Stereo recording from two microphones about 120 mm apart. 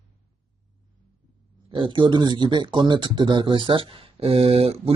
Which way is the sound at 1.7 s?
45° right (ahead or behind).